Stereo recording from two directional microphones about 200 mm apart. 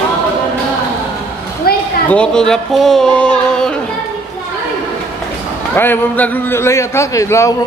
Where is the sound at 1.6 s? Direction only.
50° left (ahead or behind).